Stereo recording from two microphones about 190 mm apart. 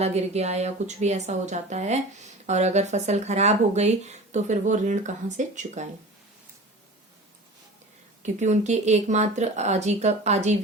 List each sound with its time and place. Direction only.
0.0 s a woman's voice: 35° right (ahead or behind)
8.2 s a woman's voice: 40° right (ahead or behind)